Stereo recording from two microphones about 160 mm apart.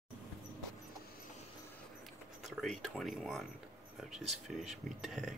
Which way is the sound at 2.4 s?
Centre (ahead or behind).